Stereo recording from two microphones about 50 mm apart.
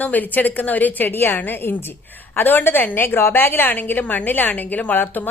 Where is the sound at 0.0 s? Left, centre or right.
Left.